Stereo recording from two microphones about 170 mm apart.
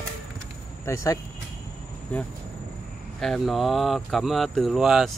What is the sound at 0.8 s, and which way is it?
Speech, 20° left (ahead or behind).